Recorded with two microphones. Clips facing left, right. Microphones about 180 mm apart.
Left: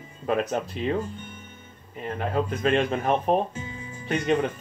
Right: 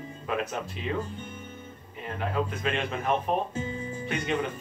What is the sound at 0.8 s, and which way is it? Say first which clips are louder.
Speech: left 6 dB; 40° left (ahead or behind).